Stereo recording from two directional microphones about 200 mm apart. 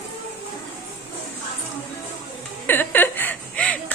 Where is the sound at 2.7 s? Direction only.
10° left (ahead or behind).